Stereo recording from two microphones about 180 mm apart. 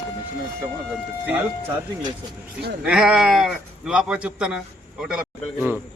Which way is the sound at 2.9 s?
5° right (ahead or behind).